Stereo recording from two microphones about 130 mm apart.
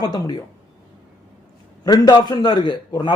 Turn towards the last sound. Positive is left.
turn(degrees=35)  # may be behind; listen again after turning